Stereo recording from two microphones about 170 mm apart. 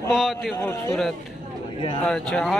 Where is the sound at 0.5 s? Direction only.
15° left (ahead or behind).